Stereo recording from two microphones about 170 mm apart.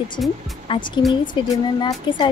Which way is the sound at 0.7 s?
30° left (ahead or behind).